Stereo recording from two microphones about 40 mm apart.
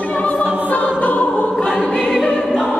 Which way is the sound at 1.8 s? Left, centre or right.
Centre.